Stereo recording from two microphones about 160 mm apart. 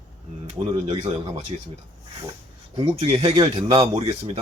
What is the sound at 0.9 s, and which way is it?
Speech, 40° right (ahead or behind).